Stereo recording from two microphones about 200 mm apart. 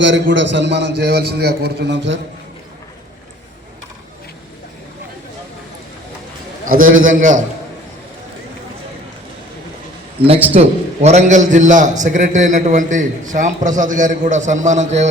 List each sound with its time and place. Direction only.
0.0 s a man's voice: 65° right (ahead or behind)
6.7 s a man's voice: 45° right (ahead or behind)
10.2 s a man's voice: 10° right (ahead or behind)
10.5 s a man's voice: 35° right (ahead or behind)